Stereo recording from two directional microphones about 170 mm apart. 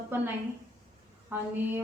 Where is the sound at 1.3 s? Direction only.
10° right (ahead or behind).